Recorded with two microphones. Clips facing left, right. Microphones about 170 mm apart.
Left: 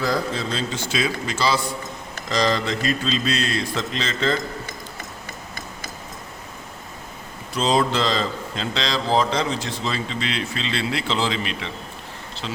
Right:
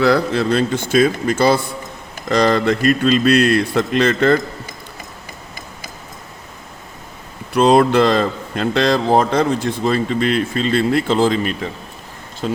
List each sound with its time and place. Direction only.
0.0 s a man's voice: 70° right (ahead or behind)
7.5 s speech: 60° right (ahead or behind)